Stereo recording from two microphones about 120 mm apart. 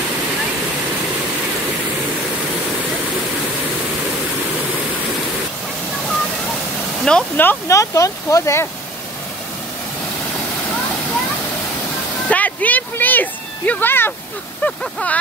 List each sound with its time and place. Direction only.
7.1 s speech: 10° left (ahead or behind)
12.3 s a sound: 15° left (ahead or behind)
14.6 s speech: 10° left (ahead or behind)